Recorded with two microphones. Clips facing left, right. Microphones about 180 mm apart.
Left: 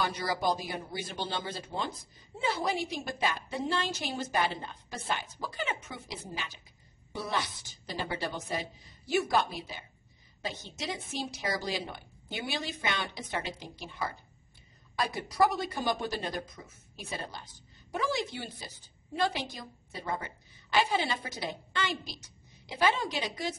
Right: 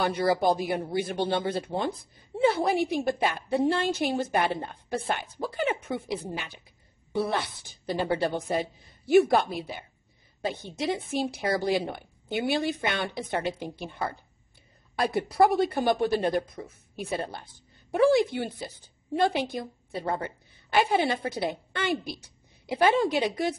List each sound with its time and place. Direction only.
0.0 s a woman's voice: 55° right (ahead or behind)
1.7 s speech: 25° right (ahead or behind)
2.4 s a woman's voice: 60° right (ahead or behind)
20.7 s a woman's voice: 60° right (ahead or behind)